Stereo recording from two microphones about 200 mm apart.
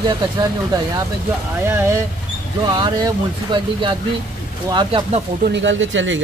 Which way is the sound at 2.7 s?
20° right (ahead or behind).